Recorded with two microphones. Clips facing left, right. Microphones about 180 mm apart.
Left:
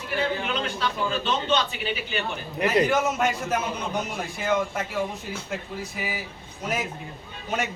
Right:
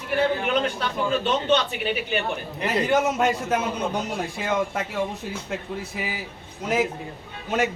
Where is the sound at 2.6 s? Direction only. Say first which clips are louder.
Even; 30° right (ahead or behind).